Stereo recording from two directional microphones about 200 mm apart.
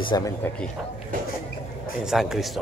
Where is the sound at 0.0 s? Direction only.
20° left (ahead or behind).